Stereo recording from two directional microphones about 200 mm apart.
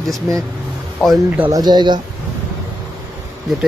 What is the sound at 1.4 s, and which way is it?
Speech, 20° right (ahead or behind).